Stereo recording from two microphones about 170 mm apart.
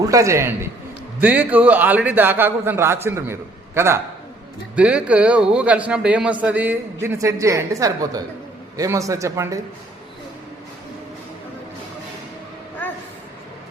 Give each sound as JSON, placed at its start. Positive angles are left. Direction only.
{"t": 0.0, "sound": "a man's voice", "side_deg": -20}